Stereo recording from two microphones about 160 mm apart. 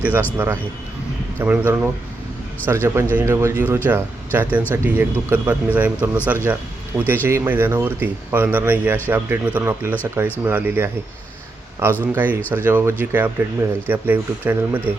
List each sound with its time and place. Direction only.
0.0 s speech: 10° right (ahead or behind)
12.4 s speech: 10° left (ahead or behind)
12.6 s speech: 10° right (ahead or behind)